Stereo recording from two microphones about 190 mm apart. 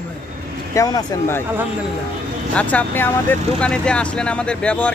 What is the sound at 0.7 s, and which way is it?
Speech, 20° left (ahead or behind).